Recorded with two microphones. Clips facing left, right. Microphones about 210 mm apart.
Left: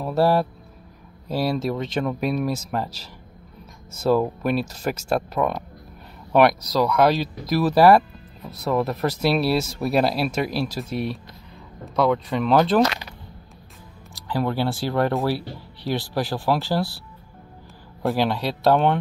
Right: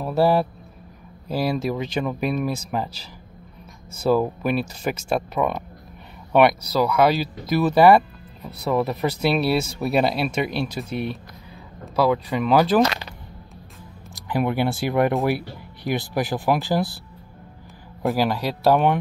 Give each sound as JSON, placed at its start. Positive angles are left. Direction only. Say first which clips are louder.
{"t": 0.0, "sound": "speech", "louder": "right 1 dB", "side_deg": 0}
{"t": 4.0, "sound": "speech", "louder": "even", "side_deg": 0}
{"t": 14.1, "sound": "speech", "louder": "right 1 dB", "side_deg": -15}
{"t": 18.0, "sound": "speech", "louder": "even", "side_deg": -10}